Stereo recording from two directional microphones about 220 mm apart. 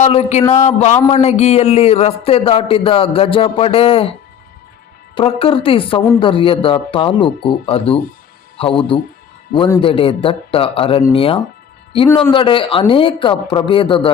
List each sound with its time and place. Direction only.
0.0 s speech: 30° left (ahead or behind)
0.4 s a man's voice: 15° left (ahead or behind)
0.8 s a man's voice: 30° left (ahead or behind)
5.1 s a man's voice: 25° left (ahead or behind)
9.6 s a man's voice: 10° left (ahead or behind)
9.8 s a man's voice: 25° left (ahead or behind)